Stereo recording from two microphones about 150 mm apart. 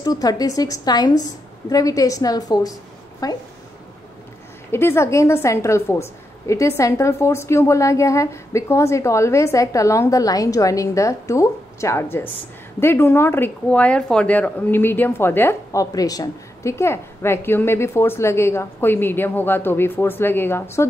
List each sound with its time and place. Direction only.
0.0 s a woman's voice: 25° left (ahead or behind)
4.6 s a woman's voice: 15° left (ahead or behind)